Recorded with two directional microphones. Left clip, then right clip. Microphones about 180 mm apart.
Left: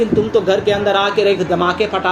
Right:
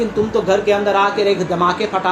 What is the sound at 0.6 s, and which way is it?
Speech, 40° left (ahead or behind).